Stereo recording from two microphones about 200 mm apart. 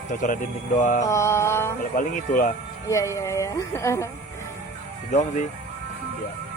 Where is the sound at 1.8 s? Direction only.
40° left (ahead or behind).